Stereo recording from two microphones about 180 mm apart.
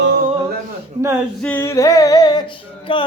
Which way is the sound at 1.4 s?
15° left (ahead or behind).